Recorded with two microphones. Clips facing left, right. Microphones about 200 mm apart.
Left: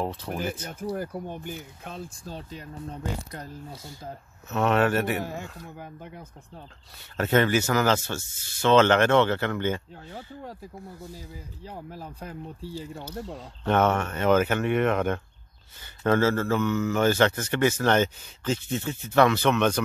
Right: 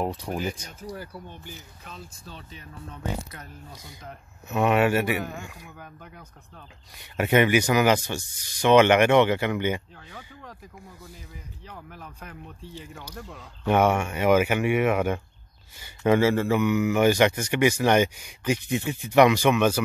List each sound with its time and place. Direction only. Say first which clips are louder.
0.0 s speech: right 1 dB; 15° right (ahead or behind)
0.7 s speech: left 6 dB; 50° left (ahead or behind)
2.9 s speech: right 2 dB; 35° left (ahead or behind)
4.5 s speech: right 1 dB; 10° right (ahead or behind)
5.2 s speech: left 1 dB; 25° left (ahead or behind)
7.0 s speech: right 2 dB; 15° right (ahead or behind)
11.1 s speech: left 4 dB; 30° left (ahead or behind)
13.7 s speech: right 1 dB; 10° right (ahead or behind)